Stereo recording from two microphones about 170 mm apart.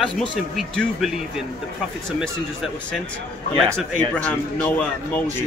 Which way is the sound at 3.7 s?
5° left (ahead or behind).